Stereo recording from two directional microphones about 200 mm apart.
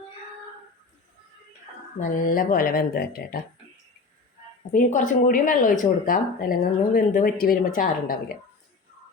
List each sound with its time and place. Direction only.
2.0 s speech: 45° left (ahead or behind)
4.7 s speech: 40° left (ahead or behind)